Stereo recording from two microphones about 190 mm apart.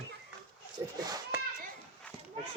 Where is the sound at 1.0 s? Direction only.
20° right (ahead or behind).